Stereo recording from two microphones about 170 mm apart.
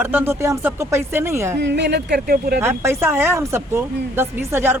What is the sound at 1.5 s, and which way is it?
Speech, 90° right.